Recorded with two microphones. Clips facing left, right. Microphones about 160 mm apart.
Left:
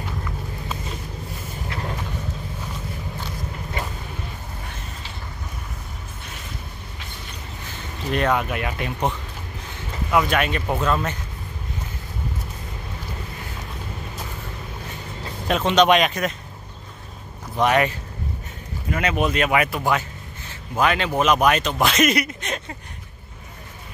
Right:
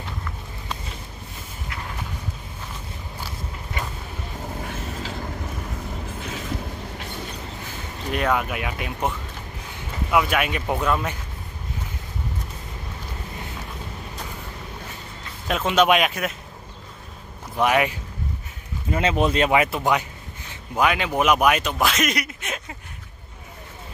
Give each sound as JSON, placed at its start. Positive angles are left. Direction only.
{"t": 8.1, "sound": "speech", "side_deg": -5}
{"t": 10.1, "sound": "speech", "side_deg": -5}
{"t": 15.4, "sound": "speech", "side_deg": -5}
{"t": 17.6, "sound": "speech", "side_deg": -10}
{"t": 18.9, "sound": "speech", "side_deg": -25}